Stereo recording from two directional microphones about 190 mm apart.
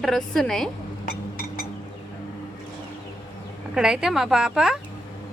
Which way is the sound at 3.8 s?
5° right (ahead or behind).